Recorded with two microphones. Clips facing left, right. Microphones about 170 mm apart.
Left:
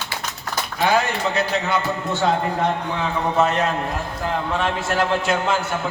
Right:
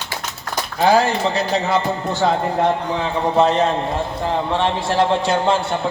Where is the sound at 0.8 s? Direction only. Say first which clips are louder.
Right 5 dB; 35° right (ahead or behind).